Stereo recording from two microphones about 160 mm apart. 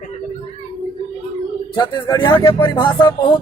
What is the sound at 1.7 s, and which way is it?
Speech, 25° left (ahead or behind).